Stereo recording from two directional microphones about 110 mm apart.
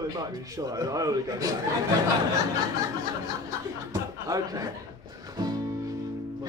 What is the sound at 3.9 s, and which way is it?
Speech, 30° right (ahead or behind).